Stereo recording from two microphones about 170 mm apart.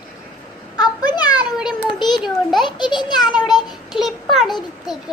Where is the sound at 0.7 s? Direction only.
25° left (ahead or behind).